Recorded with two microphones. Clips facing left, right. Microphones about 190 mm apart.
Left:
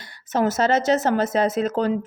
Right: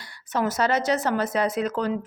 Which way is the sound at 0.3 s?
25° left (ahead or behind).